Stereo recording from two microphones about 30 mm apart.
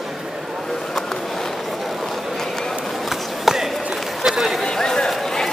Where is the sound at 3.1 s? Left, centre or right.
Centre.